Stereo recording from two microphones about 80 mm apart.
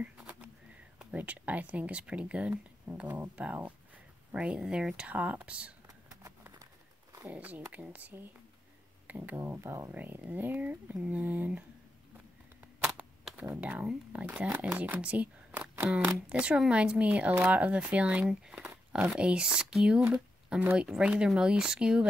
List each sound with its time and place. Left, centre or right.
0.0 s a sound: centre
1.1 s speech: centre
7.2 s speech: centre
9.4 s speech: right
13.4 s speech: centre